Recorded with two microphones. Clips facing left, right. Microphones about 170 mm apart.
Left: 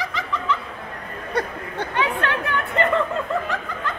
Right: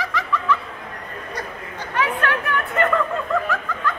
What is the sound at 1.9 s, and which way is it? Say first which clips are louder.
Chatter: right 2 dB; 25° left (ahead or behind).